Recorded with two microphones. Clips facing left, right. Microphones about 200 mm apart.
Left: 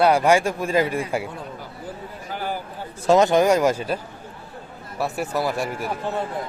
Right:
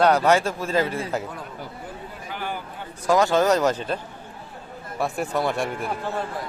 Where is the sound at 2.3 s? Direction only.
40° left (ahead or behind).